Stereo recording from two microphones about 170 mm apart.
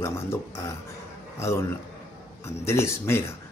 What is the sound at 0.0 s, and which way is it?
Speech, 15° left (ahead or behind).